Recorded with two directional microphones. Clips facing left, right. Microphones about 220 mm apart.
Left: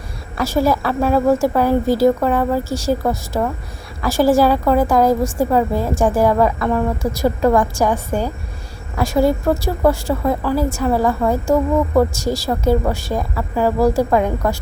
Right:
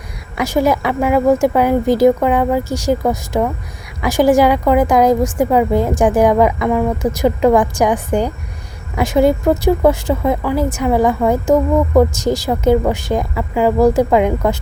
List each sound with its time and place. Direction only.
0.3 s a woman's voice: 15° right (ahead or behind)